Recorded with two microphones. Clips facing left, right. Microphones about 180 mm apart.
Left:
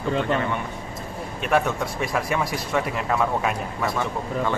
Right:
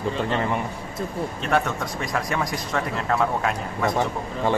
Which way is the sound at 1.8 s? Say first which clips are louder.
Left 2 dB; 5° left (ahead or behind).